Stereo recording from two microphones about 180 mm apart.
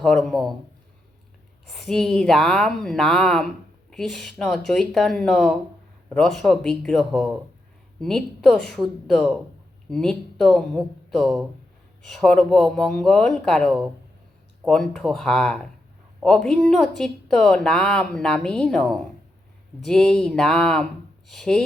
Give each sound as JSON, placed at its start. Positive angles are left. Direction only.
{"t": 0.0, "sound": "a woman's voice", "side_deg": 0}
{"t": 1.6, "sound": "a woman's voice", "side_deg": 0}